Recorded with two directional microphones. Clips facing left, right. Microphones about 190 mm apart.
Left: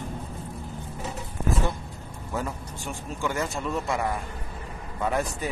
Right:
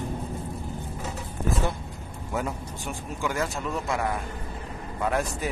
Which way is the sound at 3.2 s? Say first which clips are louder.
Even; centre (ahead or behind).